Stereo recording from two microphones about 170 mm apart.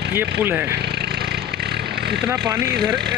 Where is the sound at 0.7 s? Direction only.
75° right (ahead or behind).